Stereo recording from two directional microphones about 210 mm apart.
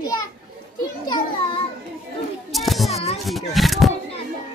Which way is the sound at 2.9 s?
30° left (ahead or behind).